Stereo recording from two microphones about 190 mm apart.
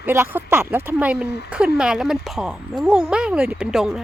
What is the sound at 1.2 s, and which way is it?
Speech, 60° left (ahead or behind).